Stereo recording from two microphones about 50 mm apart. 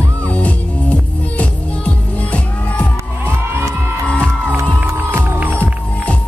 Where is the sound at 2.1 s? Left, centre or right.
Left.